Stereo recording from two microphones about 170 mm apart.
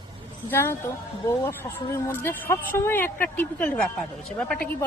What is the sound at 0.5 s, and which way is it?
Speech, 15° left (ahead or behind).